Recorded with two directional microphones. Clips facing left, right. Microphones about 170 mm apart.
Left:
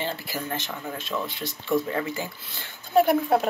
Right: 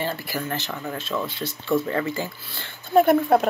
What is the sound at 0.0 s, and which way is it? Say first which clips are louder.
A woman's voice: right 3 dB; 20° left (ahead or behind).